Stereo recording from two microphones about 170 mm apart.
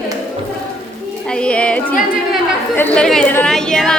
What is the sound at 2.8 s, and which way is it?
Chatter, 10° left (ahead or behind).